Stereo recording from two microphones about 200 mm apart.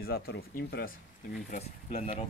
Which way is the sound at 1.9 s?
30° left (ahead or behind).